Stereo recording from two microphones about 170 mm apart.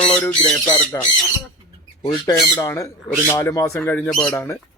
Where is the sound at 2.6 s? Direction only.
20° left (ahead or behind).